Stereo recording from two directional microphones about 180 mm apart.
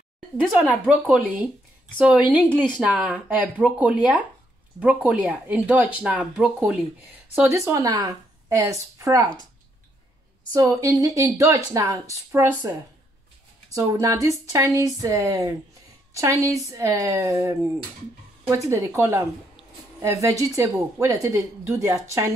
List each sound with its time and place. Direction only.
0.5 s speech: 5° right (ahead or behind); by 9.5 s 20° right (ahead or behind)
10.5 s speech: 20° right (ahead or behind)